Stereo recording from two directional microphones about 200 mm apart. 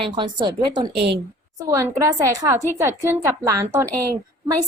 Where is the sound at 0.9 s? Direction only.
55° right (ahead or behind).